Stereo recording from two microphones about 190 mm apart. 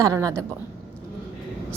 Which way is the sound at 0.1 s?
15° right (ahead or behind).